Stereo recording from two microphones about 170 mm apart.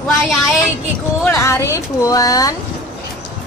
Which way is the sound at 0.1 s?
Centre (ahead or behind).